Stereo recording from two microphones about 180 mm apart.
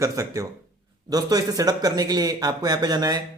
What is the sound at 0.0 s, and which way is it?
A man's voice, 15° right (ahead or behind).